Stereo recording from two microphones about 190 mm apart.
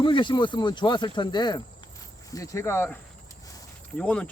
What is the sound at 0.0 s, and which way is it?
Speech, 25° left (ahead or behind).